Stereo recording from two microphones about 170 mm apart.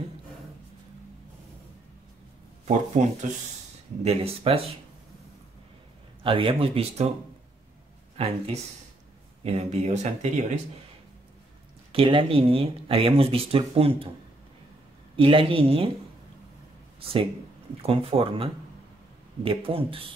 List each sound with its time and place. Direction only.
2.6 s speech: 45° right (ahead or behind)
6.2 s speech: 30° right (ahead or behind)
8.2 s speech: 35° right (ahead or behind)
9.4 s speech: 40° right (ahead or behind)
11.9 s speech: 30° right (ahead or behind)
15.1 s speech: 30° right (ahead or behind)
17.0 s speech: 30° right (ahead or behind)